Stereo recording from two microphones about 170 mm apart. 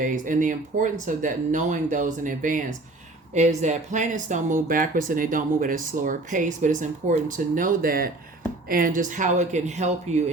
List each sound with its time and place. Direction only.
0.0 s speech: 50° right (ahead or behind)